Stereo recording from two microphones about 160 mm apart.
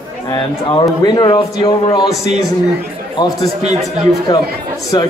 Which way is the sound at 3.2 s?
30° left (ahead or behind).